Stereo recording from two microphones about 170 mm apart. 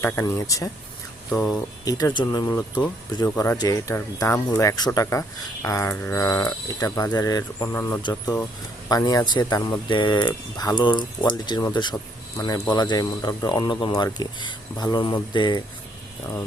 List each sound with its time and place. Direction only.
0.0 s speech: 15° left (ahead or behind)
8.9 s speech: 20° left (ahead or behind)